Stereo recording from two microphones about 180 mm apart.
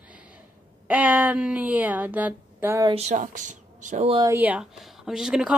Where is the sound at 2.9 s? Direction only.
40° right (ahead or behind).